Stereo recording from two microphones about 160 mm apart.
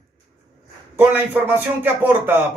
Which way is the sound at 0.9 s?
10° right (ahead or behind).